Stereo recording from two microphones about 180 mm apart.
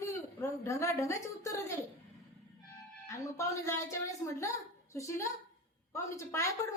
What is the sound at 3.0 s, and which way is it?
A woman's voice, 15° left (ahead or behind).